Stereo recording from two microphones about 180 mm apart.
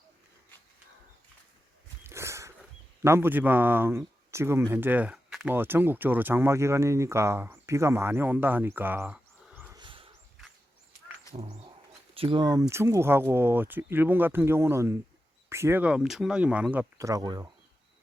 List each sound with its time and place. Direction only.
2.0 s a sound: 15° right (ahead or behind)
3.0 s a man's voice: 15° right (ahead or behind)
9.7 s wild animals: 30° right (ahead or behind)
11.3 s wild animals: 30° right (ahead or behind)
12.1 s a man's voice: 30° right (ahead or behind)